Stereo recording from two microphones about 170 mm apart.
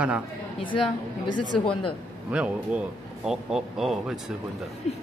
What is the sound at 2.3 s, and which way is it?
Speech, 5° right (ahead or behind).